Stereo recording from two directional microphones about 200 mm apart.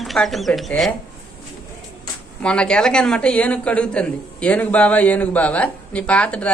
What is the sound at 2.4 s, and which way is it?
Speech, 5° left (ahead or behind).